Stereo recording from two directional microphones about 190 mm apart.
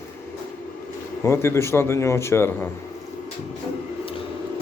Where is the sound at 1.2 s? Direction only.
15° left (ahead or behind).